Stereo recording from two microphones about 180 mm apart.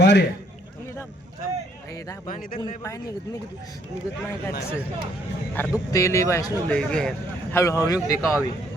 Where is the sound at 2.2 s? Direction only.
45° left (ahead or behind).